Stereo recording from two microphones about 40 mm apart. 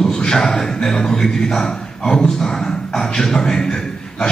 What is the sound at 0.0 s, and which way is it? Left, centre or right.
Speech, centre.